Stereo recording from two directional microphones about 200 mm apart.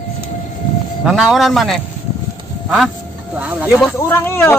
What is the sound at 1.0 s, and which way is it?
Speech, centre (ahead or behind).